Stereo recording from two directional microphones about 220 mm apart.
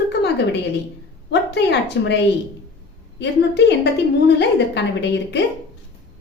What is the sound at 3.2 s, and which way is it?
A woman's voice, 50° left (ahead or behind).